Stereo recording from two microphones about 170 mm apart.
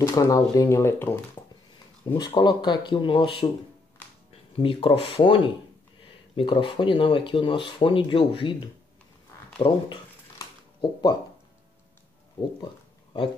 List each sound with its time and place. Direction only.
0.0 s speech: 20° left (ahead or behind)
2.1 s speech: 25° left (ahead or behind)
9.6 s speech: 35° left (ahead or behind)
10.4 s a sound: 25° left (ahead or behind)